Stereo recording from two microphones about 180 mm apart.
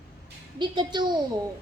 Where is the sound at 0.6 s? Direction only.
25° right (ahead or behind).